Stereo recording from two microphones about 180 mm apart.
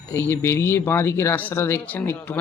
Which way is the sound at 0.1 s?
15° left (ahead or behind).